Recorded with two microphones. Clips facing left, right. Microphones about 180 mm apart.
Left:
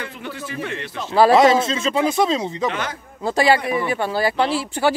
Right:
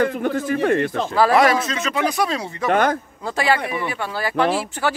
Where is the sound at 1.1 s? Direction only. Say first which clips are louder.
Left 3 dB; 25° left (ahead or behind).